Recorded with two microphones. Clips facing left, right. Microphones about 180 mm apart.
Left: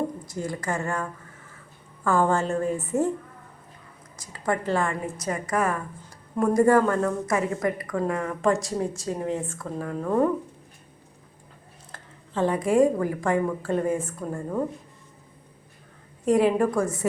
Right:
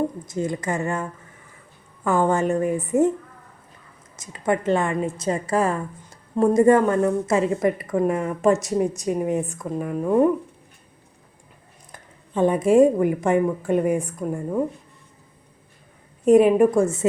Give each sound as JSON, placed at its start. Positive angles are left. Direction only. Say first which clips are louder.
{"t": 0.3, "sound": "a woman's voice", "louder": "right 4 dB", "side_deg": -20}
{"t": 2.0, "sound": "a woman's voice", "louder": "right 3 dB", "side_deg": -20}
{"t": 4.2, "sound": "a woman's voice", "louder": "right 4 dB", "side_deg": -20}
{"t": 11.9, "sound": "a woman's voice", "louder": "right 2 dB", "side_deg": -15}
{"t": 16.2, "sound": "a woman's voice", "louder": "right 6 dB", "side_deg": -20}